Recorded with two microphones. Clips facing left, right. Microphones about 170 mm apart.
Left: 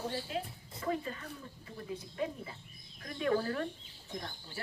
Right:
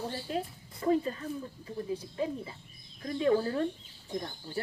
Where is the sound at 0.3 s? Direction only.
40° right (ahead or behind); by 3.6 s 25° right (ahead or behind).